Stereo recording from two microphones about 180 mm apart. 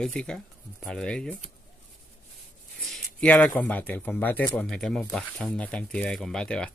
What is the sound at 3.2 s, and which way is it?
Speech, 5° left (ahead or behind).